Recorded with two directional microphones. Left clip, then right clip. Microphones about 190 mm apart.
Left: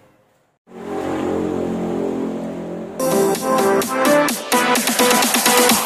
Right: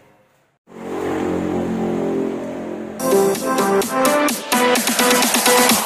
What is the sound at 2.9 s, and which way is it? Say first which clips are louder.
Music: right 1 dB; centre (ahead or behind).